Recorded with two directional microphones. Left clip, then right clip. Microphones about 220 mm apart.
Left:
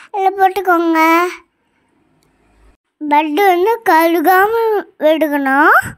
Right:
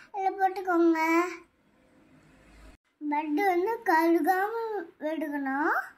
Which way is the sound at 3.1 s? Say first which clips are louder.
Left 15 dB; 40° left (ahead or behind).